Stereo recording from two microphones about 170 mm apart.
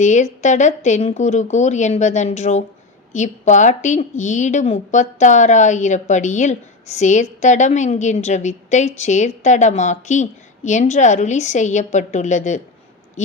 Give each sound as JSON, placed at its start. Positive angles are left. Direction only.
{"t": 0.0, "sound": "a woman's voice", "side_deg": 45}